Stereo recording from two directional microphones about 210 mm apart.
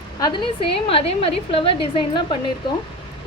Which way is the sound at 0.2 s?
20° left (ahead or behind).